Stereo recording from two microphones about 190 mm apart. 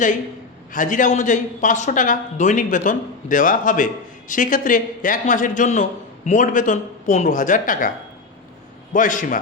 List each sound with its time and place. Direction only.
0.7 s a man's voice: 45° left (ahead or behind)
8.9 s a man's voice: 45° left (ahead or behind)